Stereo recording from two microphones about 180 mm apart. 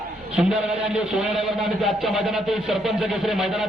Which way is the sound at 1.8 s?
Centre (ahead or behind).